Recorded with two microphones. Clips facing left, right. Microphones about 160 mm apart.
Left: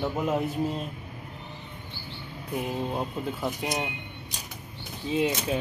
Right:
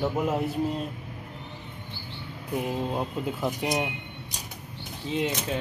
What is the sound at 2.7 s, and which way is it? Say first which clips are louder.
Speech: even; 10° right (ahead or behind).